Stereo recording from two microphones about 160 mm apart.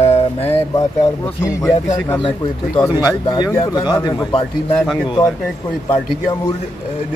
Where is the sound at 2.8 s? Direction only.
25° left (ahead or behind).